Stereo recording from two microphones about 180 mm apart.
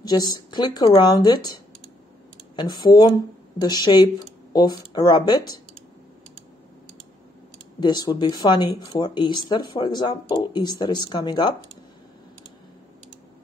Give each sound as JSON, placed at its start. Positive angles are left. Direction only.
{"t": 0.0, "sound": "speech", "side_deg": 20}
{"t": 2.5, "sound": "speech", "side_deg": 25}
{"t": 7.8, "sound": "speech", "side_deg": 25}